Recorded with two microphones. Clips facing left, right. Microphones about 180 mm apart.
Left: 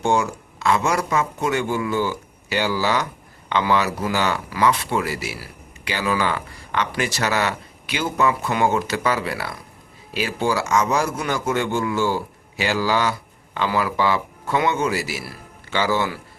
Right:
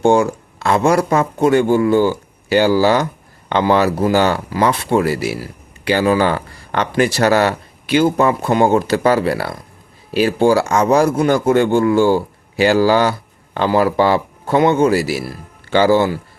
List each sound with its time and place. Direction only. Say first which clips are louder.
0.0 s speech: right 8 dB; 35° right (ahead or behind)
0.3 s a sound: right 3 dB; 55° right (ahead or behind)
0.8 s speech: right 7 dB; 35° right (ahead or behind); by 5.5 s 50° right (ahead or behind)
6.0 s speech: right 7 dB; 40° right (ahead or behind)
10.6 s speech: right 5 dB; 55° right (ahead or behind)
10.8 s speech: right 9 dB; 35° right (ahead or behind)